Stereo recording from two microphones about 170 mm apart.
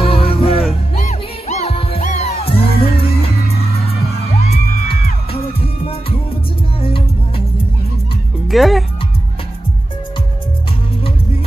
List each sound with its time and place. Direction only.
0.0 s music: 35° left (ahead or behind)
4.3 s music: 40° left (ahead or behind)
8.5 s speech: centre (ahead or behind)